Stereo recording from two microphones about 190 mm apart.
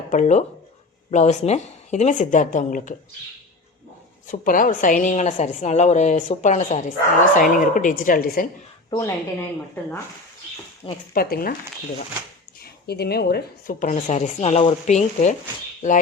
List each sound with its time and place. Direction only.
0.1 s speech: 40° left (ahead or behind)
4.3 s a woman's voice: 45° left (ahead or behind)
8.9 s speech: 15° left (ahead or behind)
11.1 s a woman's voice: 50° left (ahead or behind)
12.6 s speech: 55° left (ahead or behind); by 15.4 s 40° left (ahead or behind)